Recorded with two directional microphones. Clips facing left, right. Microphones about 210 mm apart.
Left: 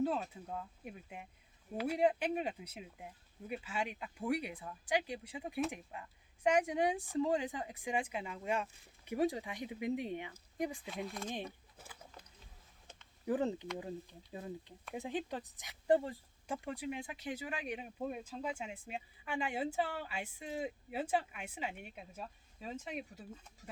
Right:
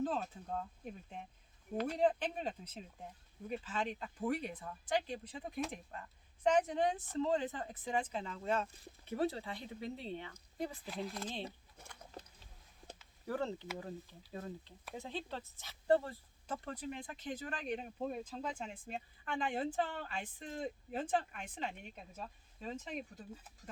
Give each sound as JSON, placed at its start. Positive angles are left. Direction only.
{"t": 0.9, "sound": "speech", "side_deg": 10}
{"t": 10.8, "sound": "speech", "side_deg": 0}
{"t": 13.2, "sound": "speech", "side_deg": 15}